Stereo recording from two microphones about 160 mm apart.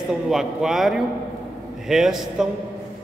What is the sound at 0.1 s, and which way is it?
A man's voice, centre (ahead or behind).